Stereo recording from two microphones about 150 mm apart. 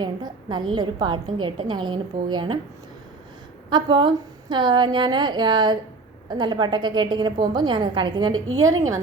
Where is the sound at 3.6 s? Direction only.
30° right (ahead or behind).